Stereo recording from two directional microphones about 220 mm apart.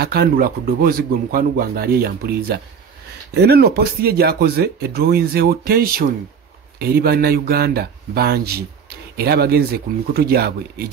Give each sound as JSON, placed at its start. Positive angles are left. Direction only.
{"t": 0.0, "sound": "speech", "side_deg": -45}